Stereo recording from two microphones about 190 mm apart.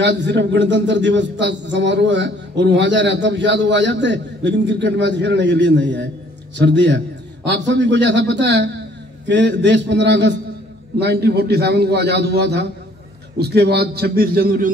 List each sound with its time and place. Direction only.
0.0 s a man's voice: 70° right (ahead or behind); by 14.7 s 50° right (ahead or behind)